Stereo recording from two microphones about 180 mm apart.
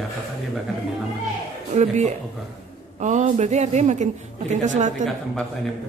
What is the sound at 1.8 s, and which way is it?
A woman's voice, 40° right (ahead or behind).